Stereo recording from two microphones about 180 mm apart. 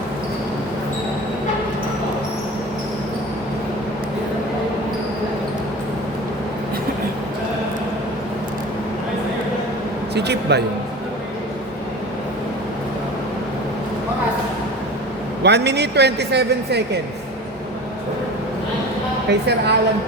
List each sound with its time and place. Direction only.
10.2 s a man's voice: 65° right (ahead or behind)
15.4 s speech: 70° right (ahead or behind)
19.3 s speech: 70° right (ahead or behind)